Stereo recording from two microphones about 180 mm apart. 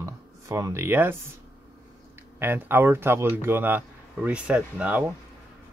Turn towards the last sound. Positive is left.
turn(degrees=-5)  # may be behind; listen again after turning